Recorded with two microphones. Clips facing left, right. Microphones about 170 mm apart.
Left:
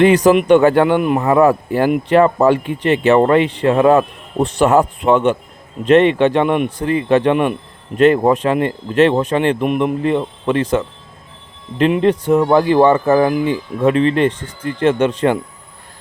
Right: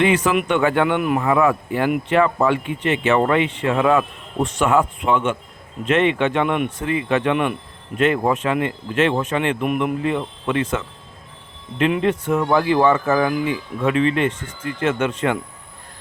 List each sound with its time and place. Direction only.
0.0 s speech: 40° left (ahead or behind)